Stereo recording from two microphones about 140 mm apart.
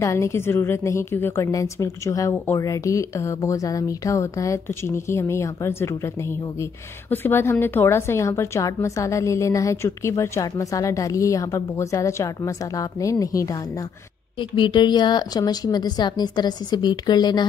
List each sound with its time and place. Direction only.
0.0 s speech: 20° left (ahead or behind)
14.4 s a woman's voice: 35° left (ahead or behind)